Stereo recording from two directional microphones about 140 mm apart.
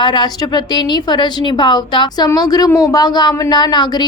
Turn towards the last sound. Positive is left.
turn(degrees=30)  # may be behind; listen again after turning